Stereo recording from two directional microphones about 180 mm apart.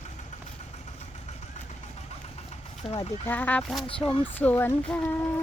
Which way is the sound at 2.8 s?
35° left (ahead or behind).